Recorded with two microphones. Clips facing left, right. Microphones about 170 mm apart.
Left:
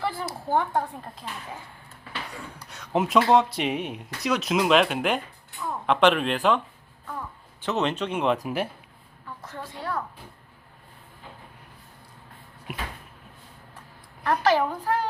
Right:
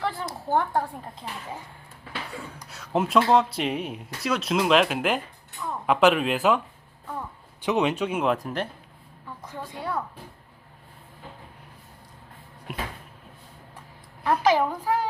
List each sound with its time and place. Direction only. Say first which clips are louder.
0.0 s speech: even; 5° left (ahead or behind)
2.6 s speech: even; 5° right (ahead or behind)
7.6 s speech: right 2 dB; 10° right (ahead or behind)
8.4 s speech: left 2 dB; 10° left (ahead or behind)
9.5 s speech: right 1 dB; 15° right (ahead or behind)
12.7 s speech: right 2 dB; 5° left (ahead or behind)
14.3 s speech: right 1 dB; 5° right (ahead or behind)